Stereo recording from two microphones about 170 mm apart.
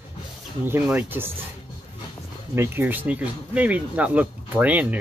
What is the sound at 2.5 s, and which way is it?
Speech, 15° right (ahead or behind).